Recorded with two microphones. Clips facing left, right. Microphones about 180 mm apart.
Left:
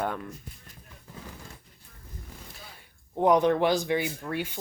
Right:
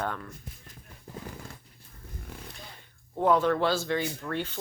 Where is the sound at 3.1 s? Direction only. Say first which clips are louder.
Left 2 dB; 15° left (ahead or behind).